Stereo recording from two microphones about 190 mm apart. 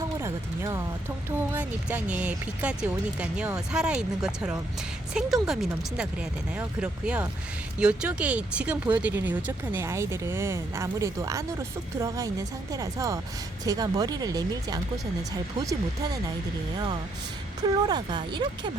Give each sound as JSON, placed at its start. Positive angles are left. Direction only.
{"t": 0.2, "sound": "speech", "side_deg": -15}
{"t": 17.6, "sound": "speech", "side_deg": -20}